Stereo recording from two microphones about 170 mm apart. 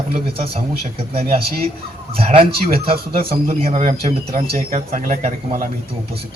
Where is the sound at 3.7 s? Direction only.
50° right (ahead or behind).